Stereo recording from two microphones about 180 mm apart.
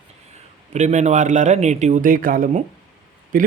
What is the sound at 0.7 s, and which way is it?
A man's voice, 40° right (ahead or behind).